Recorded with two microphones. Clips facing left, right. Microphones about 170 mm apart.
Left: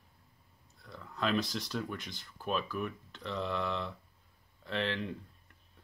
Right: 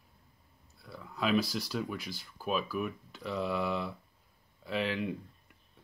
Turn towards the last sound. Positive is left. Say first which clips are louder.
# right 5 dB
turn(degrees=-10)  # may be behind; listen again after turning